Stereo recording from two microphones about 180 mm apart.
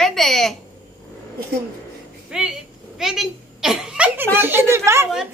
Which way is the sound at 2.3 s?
5° right (ahead or behind).